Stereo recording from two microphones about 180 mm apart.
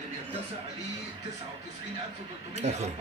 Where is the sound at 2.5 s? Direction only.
40° right (ahead or behind).